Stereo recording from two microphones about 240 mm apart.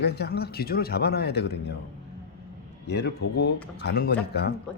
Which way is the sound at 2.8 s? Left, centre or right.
Left.